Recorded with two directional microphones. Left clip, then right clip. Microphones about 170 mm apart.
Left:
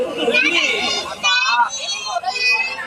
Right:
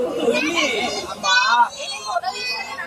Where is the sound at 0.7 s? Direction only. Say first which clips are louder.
Left 3 dB; 80° right.